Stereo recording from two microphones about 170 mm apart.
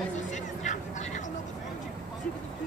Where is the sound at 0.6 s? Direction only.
45° left (ahead or behind).